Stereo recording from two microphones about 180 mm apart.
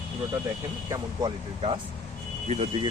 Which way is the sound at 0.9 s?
20° right (ahead or behind).